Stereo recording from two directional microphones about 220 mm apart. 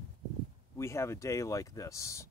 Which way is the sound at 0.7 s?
10° left (ahead or behind).